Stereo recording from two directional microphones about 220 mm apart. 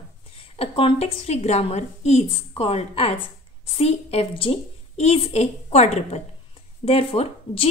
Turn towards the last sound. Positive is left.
turn(degrees=25)  # may be behind; listen again after turning